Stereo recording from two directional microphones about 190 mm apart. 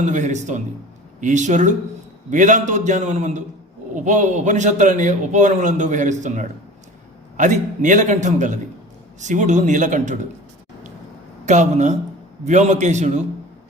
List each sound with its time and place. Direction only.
0.0 s a man's voice: 40° right (ahead or behind)
11.4 s a man's voice: 40° right (ahead or behind)